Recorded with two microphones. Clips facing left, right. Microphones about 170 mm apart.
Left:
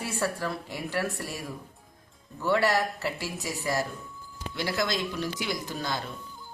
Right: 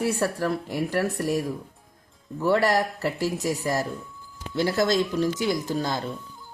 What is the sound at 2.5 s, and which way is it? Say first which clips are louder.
Speech: right 3 dB; 40° right (ahead or behind).